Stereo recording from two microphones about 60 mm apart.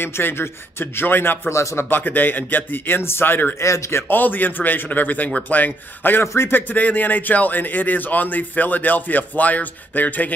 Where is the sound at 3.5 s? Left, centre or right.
Left.